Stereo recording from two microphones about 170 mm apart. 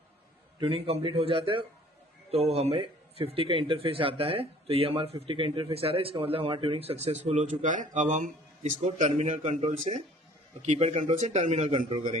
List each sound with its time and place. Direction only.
0.6 s a man's voice: 35° right (ahead or behind)